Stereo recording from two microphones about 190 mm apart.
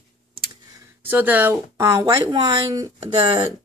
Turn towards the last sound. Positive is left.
turn(degrees=-25)  # may be behind; listen again after turning